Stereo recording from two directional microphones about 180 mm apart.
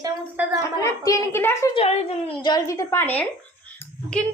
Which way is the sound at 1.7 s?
35° left (ahead or behind).